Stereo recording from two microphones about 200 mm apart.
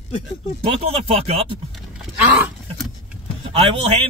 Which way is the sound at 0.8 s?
30° right (ahead or behind).